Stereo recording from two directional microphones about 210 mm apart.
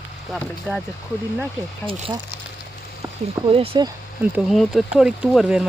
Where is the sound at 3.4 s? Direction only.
25° right (ahead or behind).